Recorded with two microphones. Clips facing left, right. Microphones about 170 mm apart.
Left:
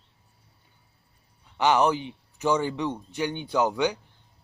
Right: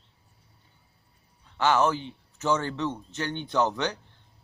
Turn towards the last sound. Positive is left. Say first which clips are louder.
# left 2 dB
turn(degrees=10)  # may be behind; listen again after turning